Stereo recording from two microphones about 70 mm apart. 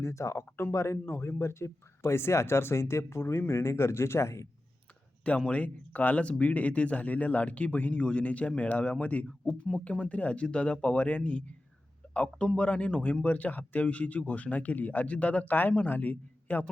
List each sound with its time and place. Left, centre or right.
0.0 s speech: left
5.5 s a man's voice: centre